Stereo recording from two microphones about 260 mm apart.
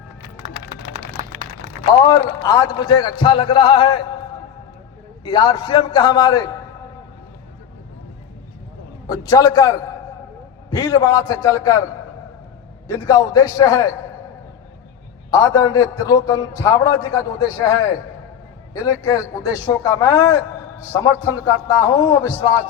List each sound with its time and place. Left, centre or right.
1.9 s a man's voice: centre
5.2 s a man's voice: centre
9.0 s a man's voice: centre
12.9 s a man's voice: centre
15.3 s a man's voice: centre